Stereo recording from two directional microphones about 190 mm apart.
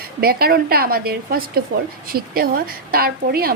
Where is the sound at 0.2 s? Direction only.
50° right (ahead or behind).